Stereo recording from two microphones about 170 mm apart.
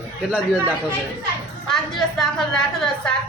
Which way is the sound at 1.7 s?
Centre (ahead or behind).